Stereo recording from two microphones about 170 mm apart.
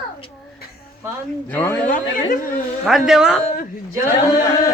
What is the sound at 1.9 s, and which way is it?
Chatter, 55° left (ahead or behind).